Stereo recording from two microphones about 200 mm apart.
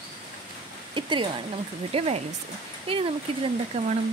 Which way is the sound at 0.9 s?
25° right (ahead or behind).